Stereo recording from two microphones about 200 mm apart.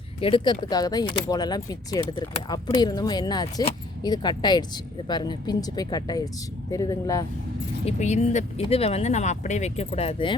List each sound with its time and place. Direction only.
0.2 s speech: 25° left (ahead or behind)
7.9 s speech: 35° left (ahead or behind)